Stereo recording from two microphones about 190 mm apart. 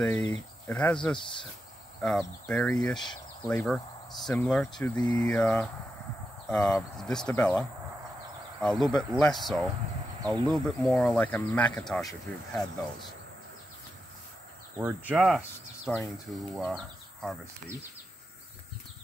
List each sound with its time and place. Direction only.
0.0 s speech: 5° left (ahead or behind)
4.9 s speech: 20° left (ahead or behind)
5.2 s speech: 5° left (ahead or behind)
7.0 s speech: centre (ahead or behind)
14.8 s speech: 10° right (ahead or behind)